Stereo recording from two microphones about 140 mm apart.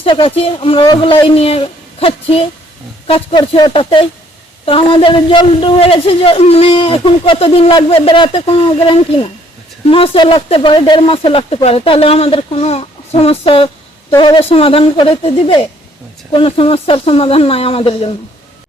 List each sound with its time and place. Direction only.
0.0 s a man's voice: 40° left (ahead or behind)